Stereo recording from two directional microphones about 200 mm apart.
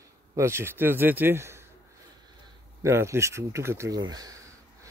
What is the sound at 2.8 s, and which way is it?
Speech, 15° right (ahead or behind).